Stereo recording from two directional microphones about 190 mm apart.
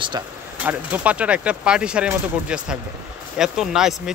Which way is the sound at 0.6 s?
5° right (ahead or behind).